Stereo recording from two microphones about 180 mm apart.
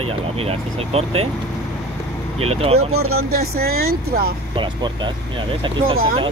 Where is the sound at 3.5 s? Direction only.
60° right (ahead or behind).